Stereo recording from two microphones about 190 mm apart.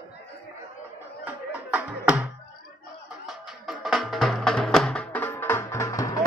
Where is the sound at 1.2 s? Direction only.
10° right (ahead or behind).